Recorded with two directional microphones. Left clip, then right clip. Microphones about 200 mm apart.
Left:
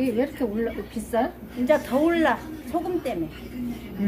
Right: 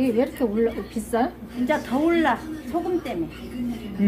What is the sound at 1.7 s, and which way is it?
A woman's voice, 30° left (ahead or behind).